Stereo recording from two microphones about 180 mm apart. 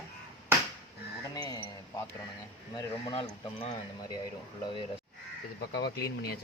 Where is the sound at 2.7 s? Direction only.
30° left (ahead or behind).